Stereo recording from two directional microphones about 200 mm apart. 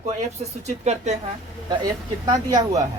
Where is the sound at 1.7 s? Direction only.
20° right (ahead or behind).